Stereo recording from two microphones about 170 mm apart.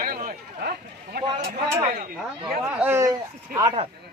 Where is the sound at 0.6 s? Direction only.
70° right (ahead or behind).